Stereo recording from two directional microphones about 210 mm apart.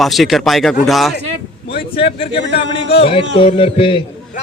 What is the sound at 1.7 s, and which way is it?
A man's voice, 25° left (ahead or behind).